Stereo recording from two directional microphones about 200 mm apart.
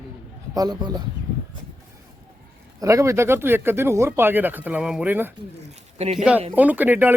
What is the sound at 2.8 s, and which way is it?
Speech, 15° right (ahead or behind).